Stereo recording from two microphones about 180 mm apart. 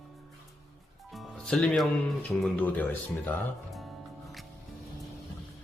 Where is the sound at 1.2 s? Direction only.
5° left (ahead or behind).